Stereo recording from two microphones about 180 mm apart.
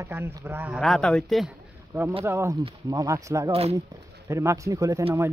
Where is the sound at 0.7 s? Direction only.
5° left (ahead or behind).